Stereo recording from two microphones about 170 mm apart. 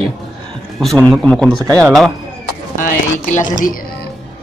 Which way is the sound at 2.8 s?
50° left (ahead or behind).